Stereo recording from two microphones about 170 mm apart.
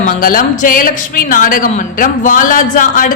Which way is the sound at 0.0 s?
55° left (ahead or behind).